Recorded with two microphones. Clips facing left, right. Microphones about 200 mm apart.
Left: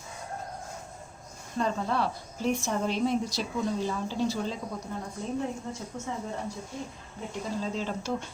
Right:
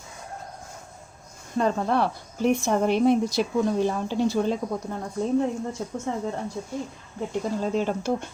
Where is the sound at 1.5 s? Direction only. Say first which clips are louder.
Right 6 dB; 55° right (ahead or behind).